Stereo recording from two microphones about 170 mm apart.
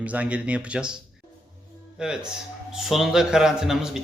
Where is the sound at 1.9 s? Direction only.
5° right (ahead or behind).